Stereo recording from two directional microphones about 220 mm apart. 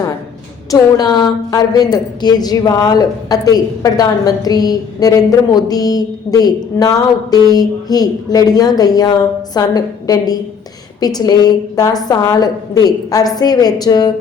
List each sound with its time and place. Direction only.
0.7 s a woman's voice: 20° left (ahead or behind)